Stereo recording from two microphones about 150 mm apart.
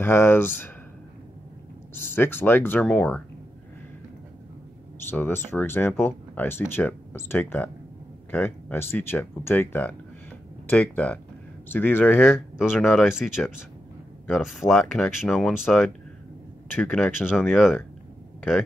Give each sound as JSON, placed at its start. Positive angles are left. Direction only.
{"t": 0.0, "sound": "speech", "side_deg": 15}
{"t": 2.0, "sound": "speech", "side_deg": 15}
{"t": 5.1, "sound": "speech", "side_deg": 15}
{"t": 12.3, "sound": "speech", "side_deg": -5}
{"t": 16.7, "sound": "speech", "side_deg": 10}